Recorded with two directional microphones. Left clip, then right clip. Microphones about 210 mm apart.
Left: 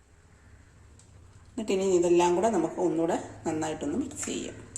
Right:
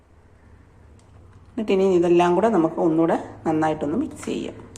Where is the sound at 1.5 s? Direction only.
10° right (ahead or behind).